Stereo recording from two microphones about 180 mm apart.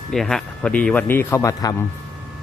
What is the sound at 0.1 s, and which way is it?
Speech, centre (ahead or behind).